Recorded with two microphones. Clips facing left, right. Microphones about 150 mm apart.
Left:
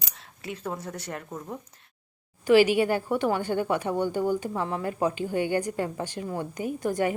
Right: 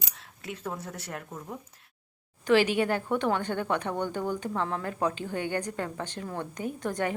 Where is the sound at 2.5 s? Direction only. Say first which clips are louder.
Left 4 dB; 5° left (ahead or behind).